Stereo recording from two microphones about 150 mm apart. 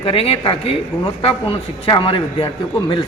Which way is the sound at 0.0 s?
40° left (ahead or behind).